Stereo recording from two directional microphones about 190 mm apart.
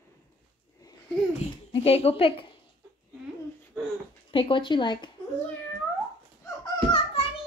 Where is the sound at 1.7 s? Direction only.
30° left (ahead or behind).